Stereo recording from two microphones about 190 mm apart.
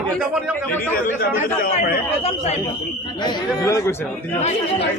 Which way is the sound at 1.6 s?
45° left (ahead or behind).